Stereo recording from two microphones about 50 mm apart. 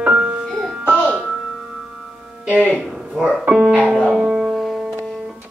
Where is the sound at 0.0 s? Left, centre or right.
Centre.